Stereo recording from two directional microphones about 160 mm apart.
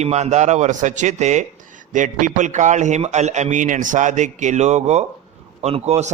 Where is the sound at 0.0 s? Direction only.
45° right (ahead or behind).